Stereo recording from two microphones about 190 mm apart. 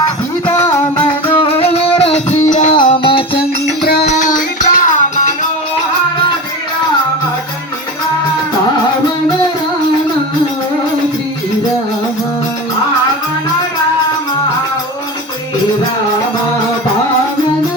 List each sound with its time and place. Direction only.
0.4 s music: 10° left (ahead or behind)
1.4 s music: 30° left (ahead or behind)
2.8 s music: 25° left (ahead or behind)
4.0 s music: 40° left (ahead or behind)